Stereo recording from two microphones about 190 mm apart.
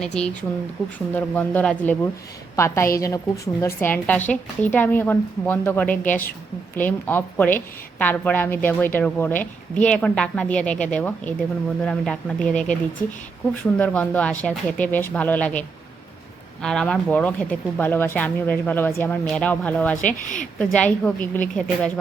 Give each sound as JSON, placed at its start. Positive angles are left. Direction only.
{"t": 0.0, "sound": "a woman's voice", "side_deg": 5}
{"t": 20.2, "sound": "a woman's voice", "side_deg": 40}
{"t": 20.7, "sound": "a woman's voice", "side_deg": 5}